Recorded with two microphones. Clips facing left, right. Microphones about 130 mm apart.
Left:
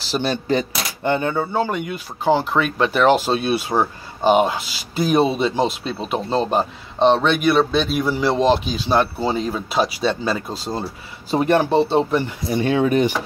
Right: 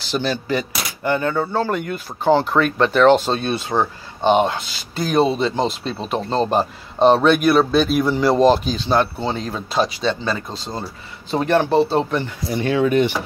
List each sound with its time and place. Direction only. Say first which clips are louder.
0.2 s speech: left 4 dB; 35° left (ahead or behind); by 12.2 s centre (ahead or behind)
12.2 s speech: left 2 dB; 20° left (ahead or behind)